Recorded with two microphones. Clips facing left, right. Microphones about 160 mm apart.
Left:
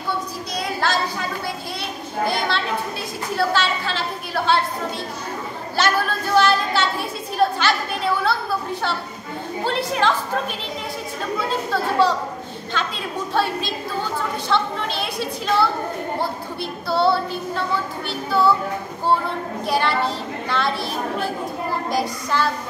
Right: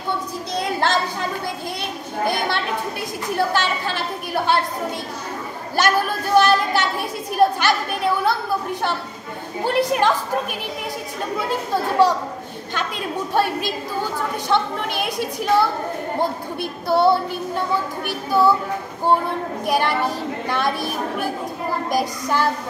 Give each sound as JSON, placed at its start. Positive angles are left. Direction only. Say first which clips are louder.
{"t": 0.6, "sound": "a sound", "louder": "right 2 dB", "side_deg": -20}
{"t": 2.2, "sound": "a woman's voice", "louder": "right 1 dB", "side_deg": -15}
{"t": 5.8, "sound": "a woman's voice", "louder": "right 2 dB", "side_deg": -15}
{"t": 9.7, "sound": "a woman's voice", "louder": "right 3 dB", "side_deg": -15}
{"t": 11.3, "sound": "a woman's voice", "louder": "right 1 dB", "side_deg": -15}
{"t": 13.3, "sound": "a woman's voice", "louder": "right 1 dB", "side_deg": -15}
{"t": 16.9, "sound": "a woman's voice", "louder": "right 2 dB", "side_deg": -15}
{"t": 19.6, "sound": "a woman's voice", "louder": "even", "side_deg": -15}